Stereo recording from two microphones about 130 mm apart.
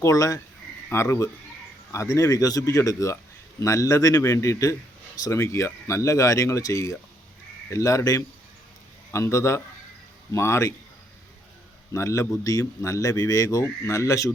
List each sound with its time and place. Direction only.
0.0 s speech: 25° left (ahead or behind)
11.9 s speech: 20° left (ahead or behind)